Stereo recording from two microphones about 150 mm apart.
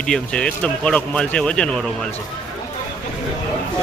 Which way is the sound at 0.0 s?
5° left (ahead or behind).